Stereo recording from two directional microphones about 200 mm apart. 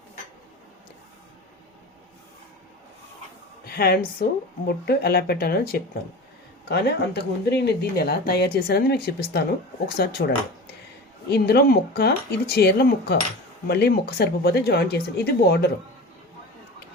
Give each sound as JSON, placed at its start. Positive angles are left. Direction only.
{"t": 3.7, "sound": "speech", "side_deg": 50}